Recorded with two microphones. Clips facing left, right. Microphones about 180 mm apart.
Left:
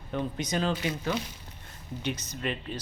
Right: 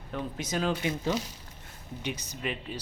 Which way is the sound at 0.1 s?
5° right (ahead or behind).